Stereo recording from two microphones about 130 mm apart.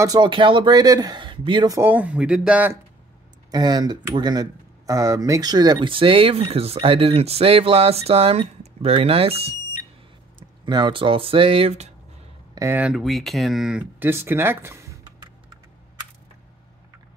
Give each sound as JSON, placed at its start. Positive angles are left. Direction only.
{"t": 0.0, "sound": "a man's voice", "side_deg": -35}
{"t": 1.8, "sound": "speech", "side_deg": -15}
{"t": 3.5, "sound": "speech", "side_deg": -30}
{"t": 10.6, "sound": "speech", "side_deg": -35}
{"t": 12.5, "sound": "speech", "side_deg": -20}
{"t": 12.8, "sound": "speech", "side_deg": 0}